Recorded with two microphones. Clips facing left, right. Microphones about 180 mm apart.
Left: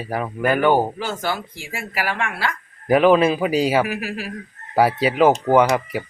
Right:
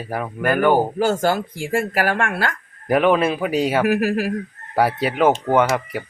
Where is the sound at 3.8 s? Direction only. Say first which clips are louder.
Right 9 dB; 50° right (ahead or behind).